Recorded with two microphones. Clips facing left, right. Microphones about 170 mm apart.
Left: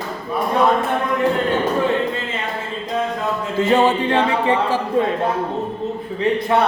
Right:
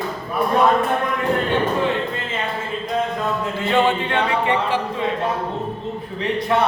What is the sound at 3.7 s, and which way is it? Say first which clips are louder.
Music: left 3 dB; 35° left (ahead or behind).